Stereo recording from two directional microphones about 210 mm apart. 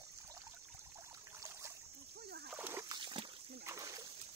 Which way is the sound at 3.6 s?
15° right (ahead or behind).